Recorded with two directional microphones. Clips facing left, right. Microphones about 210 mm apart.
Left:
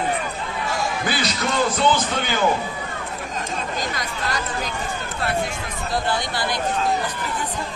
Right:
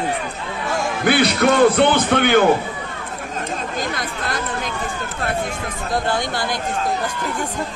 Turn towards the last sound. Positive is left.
turn(degrees=-50)  # may be behind; listen again after turning